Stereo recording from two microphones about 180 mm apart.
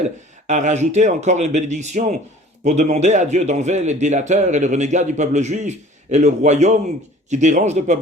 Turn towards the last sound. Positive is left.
turn(degrees=-40)  # may be behind; listen again after turning